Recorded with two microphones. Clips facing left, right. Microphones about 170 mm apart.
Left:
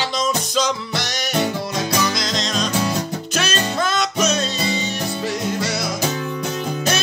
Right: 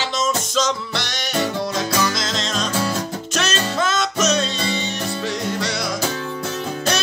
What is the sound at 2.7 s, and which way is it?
Music, 15° left (ahead or behind).